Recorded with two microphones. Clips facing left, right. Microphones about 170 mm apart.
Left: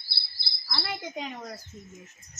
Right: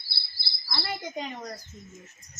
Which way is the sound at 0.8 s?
Centre (ahead or behind).